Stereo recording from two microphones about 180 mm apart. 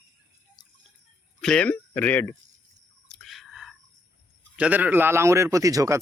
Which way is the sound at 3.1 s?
Centre (ahead or behind).